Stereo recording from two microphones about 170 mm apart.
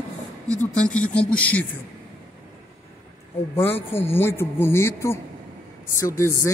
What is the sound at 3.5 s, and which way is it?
Speech, 15° left (ahead or behind).